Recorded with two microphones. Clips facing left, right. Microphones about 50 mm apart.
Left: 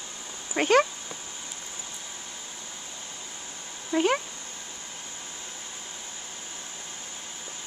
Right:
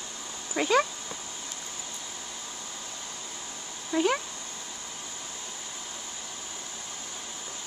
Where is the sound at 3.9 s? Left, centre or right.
Left.